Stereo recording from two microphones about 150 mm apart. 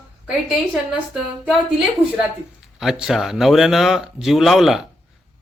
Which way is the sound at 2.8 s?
5° right (ahead or behind).